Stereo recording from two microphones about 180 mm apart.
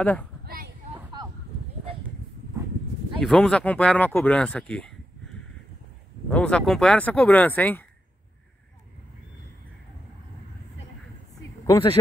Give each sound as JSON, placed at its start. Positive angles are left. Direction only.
{"t": 3.2, "sound": "speech", "side_deg": 0}
{"t": 6.3, "sound": "speech", "side_deg": 5}
{"t": 11.6, "sound": "speech", "side_deg": 20}